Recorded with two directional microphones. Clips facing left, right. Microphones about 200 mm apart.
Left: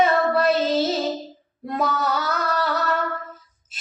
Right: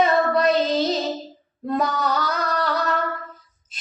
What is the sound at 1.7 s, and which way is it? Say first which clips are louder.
Music: right 1 dB; 5° left (ahead or behind).